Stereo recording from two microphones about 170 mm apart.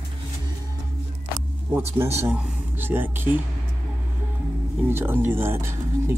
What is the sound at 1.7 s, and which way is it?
Speech, 15° right (ahead or behind).